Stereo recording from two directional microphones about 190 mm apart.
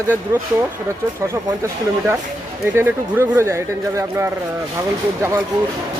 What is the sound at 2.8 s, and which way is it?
Speech, 10° right (ahead or behind).